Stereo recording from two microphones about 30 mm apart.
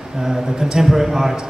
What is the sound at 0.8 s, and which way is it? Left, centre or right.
Speech, centre.